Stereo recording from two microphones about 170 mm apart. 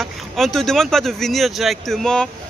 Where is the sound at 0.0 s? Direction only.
Centre (ahead or behind).